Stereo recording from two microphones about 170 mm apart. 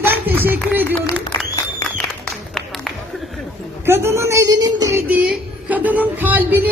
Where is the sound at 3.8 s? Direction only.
15° right (ahead or behind).